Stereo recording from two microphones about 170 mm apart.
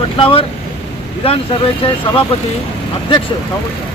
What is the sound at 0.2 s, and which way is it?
Speech, 30° left (ahead or behind).